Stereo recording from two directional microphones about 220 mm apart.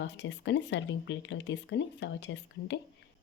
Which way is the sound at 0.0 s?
55° left (ahead or behind).